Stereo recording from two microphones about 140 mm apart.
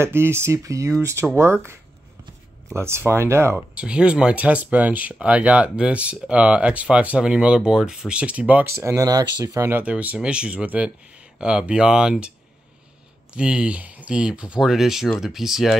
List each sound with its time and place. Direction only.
0.0 s speech: 15° right (ahead or behind)
3.7 s speech: 5° right (ahead or behind)
13.3 s speech: 5° right (ahead or behind)